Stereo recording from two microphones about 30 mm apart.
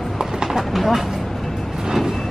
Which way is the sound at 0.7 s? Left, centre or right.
Centre.